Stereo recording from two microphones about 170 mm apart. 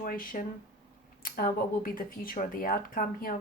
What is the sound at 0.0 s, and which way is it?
Speech, 55° left (ahead or behind).